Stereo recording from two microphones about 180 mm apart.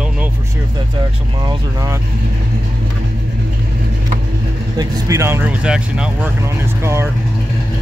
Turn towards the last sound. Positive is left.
turn(degrees=-15)  # may be behind; listen again after turning